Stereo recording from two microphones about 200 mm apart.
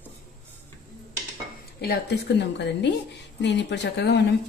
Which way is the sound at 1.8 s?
55° left (ahead or behind).